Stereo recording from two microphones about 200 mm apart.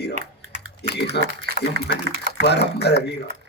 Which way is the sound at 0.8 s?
55° left (ahead or behind).